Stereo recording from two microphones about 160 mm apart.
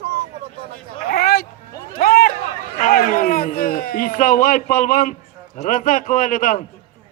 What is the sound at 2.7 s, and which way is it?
A man's voice, 60° left (ahead or behind).